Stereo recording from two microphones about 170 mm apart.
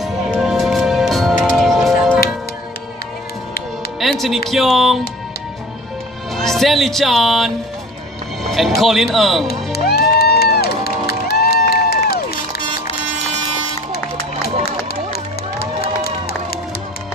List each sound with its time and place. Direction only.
0.0 s music: centre (ahead or behind)
4.0 s music: centre (ahead or behind)
4.5 s speech: centre (ahead or behind)
6.3 s speech: centre (ahead or behind)
9.5 s music: 65° left (ahead or behind)
15.6 s run: 65° left (ahead or behind)